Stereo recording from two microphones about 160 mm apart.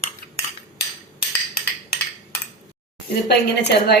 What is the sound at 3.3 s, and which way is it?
Speech, 90° left.